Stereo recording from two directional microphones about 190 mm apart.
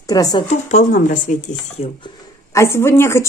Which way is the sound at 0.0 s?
20° left (ahead or behind).